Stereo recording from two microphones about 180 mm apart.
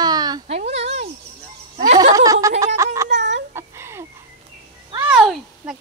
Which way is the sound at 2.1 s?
20° right (ahead or behind).